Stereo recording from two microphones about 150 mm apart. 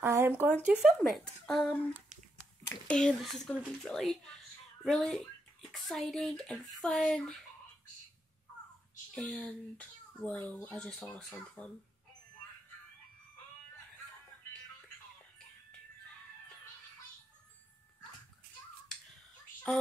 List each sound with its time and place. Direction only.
0.0 s a sound: 15° right (ahead or behind)
0.5 s speech: 10° right (ahead or behind)
9.1 s speech: 5° left (ahead or behind)